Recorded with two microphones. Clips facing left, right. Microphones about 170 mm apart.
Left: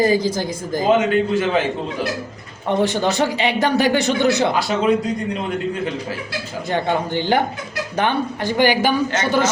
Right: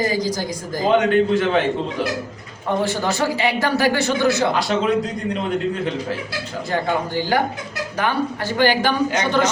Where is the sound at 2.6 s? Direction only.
20° left (ahead or behind).